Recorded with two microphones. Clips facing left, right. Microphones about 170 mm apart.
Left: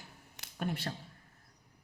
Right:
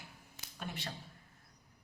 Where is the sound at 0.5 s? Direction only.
50° left (ahead or behind).